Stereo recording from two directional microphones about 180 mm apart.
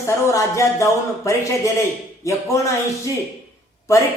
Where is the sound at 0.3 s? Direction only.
15° left (ahead or behind).